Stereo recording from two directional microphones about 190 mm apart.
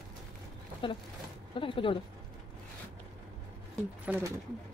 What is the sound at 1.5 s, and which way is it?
Speech, 25° left (ahead or behind).